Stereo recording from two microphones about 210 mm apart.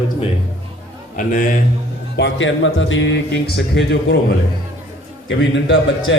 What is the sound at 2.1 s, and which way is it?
Speech, 60° left (ahead or behind).